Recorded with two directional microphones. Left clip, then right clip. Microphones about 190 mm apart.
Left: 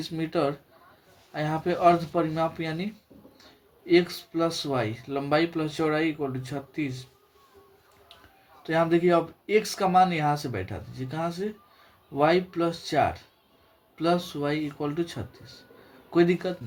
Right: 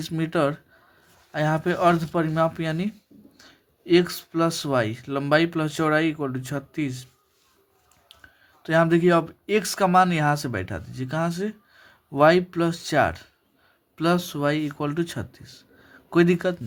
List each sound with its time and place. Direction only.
0.0 s speech: 40° right (ahead or behind)
8.6 s speech: 45° right (ahead or behind)